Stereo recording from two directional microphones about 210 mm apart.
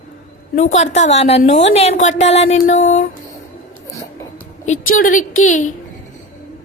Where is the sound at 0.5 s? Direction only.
35° left (ahead or behind).